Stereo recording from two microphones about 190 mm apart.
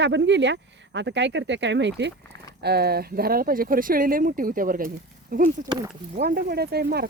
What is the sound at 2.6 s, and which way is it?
Speech, 55° right (ahead or behind).